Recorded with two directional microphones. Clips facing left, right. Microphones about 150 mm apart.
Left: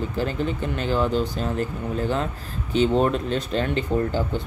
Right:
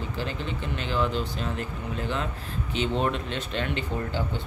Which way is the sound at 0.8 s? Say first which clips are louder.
Left 5 dB; 40° left (ahead or behind).